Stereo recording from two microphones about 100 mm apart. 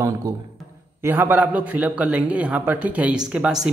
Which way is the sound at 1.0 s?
20° right (ahead or behind).